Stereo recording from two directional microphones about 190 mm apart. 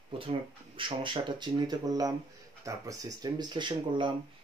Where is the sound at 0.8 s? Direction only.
25° right (ahead or behind).